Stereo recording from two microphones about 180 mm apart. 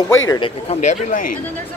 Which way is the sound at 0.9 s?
45° left (ahead or behind).